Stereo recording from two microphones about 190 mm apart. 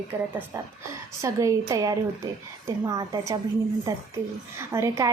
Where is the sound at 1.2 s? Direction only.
15° right (ahead or behind).